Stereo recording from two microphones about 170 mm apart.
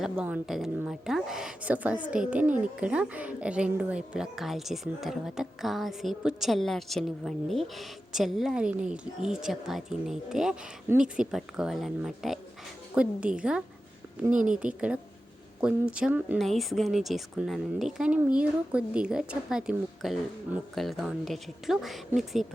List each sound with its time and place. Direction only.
0.0 s a woman's voice: 5° right (ahead or behind)